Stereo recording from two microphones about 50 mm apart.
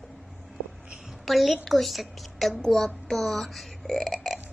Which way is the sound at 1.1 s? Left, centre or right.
Centre.